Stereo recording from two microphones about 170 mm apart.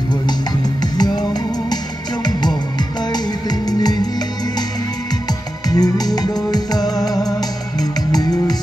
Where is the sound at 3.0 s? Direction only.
25° left (ahead or behind).